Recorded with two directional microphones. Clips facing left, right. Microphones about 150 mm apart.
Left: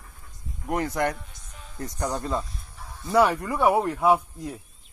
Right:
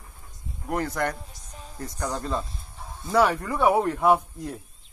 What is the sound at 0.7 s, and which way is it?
Speech, 20° left (ahead or behind).